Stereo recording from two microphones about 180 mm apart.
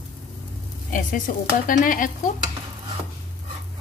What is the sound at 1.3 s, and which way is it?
Speech, 50° left (ahead or behind).